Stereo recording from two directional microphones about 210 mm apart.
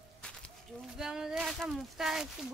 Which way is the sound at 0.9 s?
5° right (ahead or behind).